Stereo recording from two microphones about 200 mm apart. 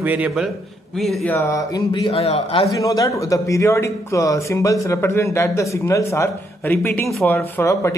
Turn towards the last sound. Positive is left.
turn(degrees=15)  # may be behind; listen again after turning